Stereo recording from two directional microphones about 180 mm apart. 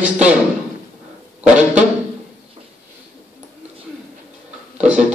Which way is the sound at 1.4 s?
5° right (ahead or behind).